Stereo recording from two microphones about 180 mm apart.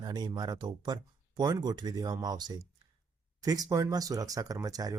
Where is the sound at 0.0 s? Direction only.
25° right (ahead or behind).